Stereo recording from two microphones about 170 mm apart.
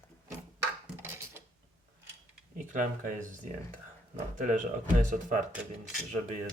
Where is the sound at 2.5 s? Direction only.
50° right (ahead or behind).